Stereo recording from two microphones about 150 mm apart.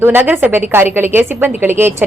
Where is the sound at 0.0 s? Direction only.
15° right (ahead or behind).